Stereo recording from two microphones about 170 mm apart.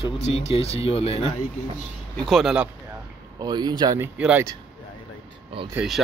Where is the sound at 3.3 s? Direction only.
25° right (ahead or behind).